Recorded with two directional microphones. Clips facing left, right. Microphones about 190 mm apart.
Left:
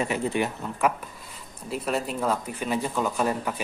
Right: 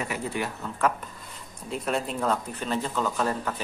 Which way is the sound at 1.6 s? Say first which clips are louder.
Left 1 dB; 5° left (ahead or behind).